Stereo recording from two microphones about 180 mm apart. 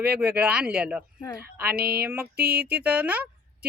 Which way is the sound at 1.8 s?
60° right (ahead or behind).